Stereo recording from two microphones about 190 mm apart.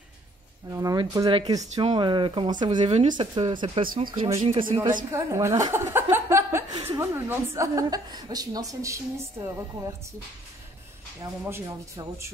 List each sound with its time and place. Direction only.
0.7 s speech: 20° right (ahead or behind)
5.1 s a woman's voice: 15° right (ahead or behind)
11.1 s a woman's voice: 15° right (ahead or behind)